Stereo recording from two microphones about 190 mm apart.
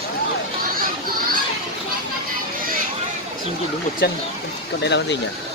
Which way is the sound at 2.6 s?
45° right (ahead or behind).